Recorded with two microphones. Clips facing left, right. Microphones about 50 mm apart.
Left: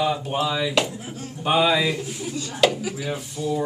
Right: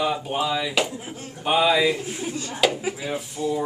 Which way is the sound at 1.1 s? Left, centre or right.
Right.